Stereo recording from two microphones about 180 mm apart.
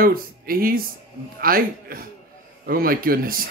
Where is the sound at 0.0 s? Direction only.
55° right (ahead or behind).